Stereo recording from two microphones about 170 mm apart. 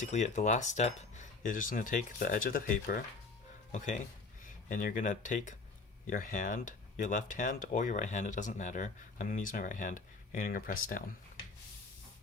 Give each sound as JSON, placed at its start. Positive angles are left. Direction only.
{"t": 0.0, "sound": "speech", "side_deg": 45}